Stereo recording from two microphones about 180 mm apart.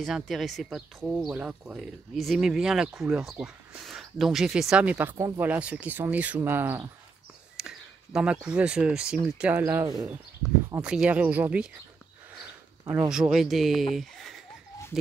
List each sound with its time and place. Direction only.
0.0 s speech: centre (ahead or behind)
12.8 s speech: 20° right (ahead or behind)
13.1 s speech: 5° right (ahead or behind)
13.9 s a sound: centre (ahead or behind)